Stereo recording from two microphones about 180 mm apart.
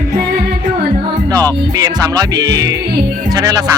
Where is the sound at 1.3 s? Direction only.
20° right (ahead or behind).